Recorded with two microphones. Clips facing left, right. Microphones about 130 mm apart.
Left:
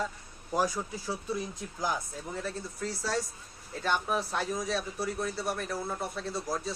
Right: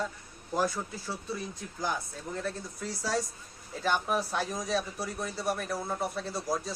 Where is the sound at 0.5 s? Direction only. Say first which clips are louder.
Even; 10° left (ahead or behind).